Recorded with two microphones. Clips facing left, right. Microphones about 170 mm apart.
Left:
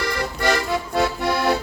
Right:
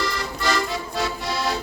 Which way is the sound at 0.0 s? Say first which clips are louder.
Left 3 dB; 55° left (ahead or behind).